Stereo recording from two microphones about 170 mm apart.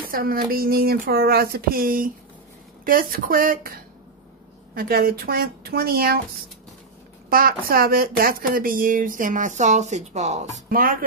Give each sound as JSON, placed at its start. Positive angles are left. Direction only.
{"t": 0.1, "sound": "speech", "side_deg": -60}
{"t": 7.2, "sound": "speech", "side_deg": -60}
{"t": 10.7, "sound": "speech", "side_deg": -55}